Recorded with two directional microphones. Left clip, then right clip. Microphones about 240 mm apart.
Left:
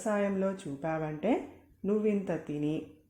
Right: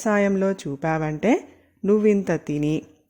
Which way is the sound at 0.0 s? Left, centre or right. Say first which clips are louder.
Right 10 dB; right.